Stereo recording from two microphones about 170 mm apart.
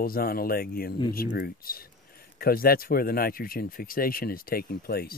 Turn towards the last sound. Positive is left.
turn(degrees=60)  # may be behind; listen again after turning